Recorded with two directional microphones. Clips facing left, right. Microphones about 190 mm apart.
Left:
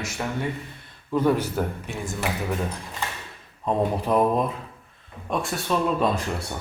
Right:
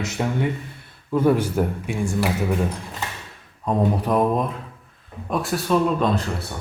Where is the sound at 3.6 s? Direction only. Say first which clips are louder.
Right 2 dB; centre (ahead or behind).